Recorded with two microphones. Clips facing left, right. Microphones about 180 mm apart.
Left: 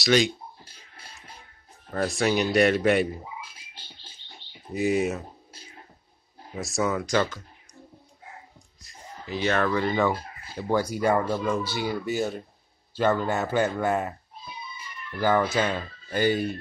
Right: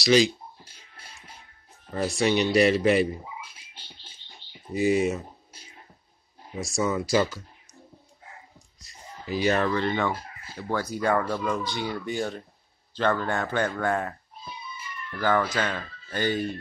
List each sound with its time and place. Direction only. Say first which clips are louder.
0.0 s speech: right 2 dB; centre (ahead or behind)
1.9 s speech: even; centre (ahead or behind)
4.7 s speech: right 1 dB; centre (ahead or behind)
6.6 s speech: even; centre (ahead or behind)
8.8 s a sound: right 2 dB; 5° right (ahead or behind)
9.8 s speech: left 2 dB; 5° left (ahead or behind)
15.1 s speech: left 2 dB; 10° left (ahead or behind)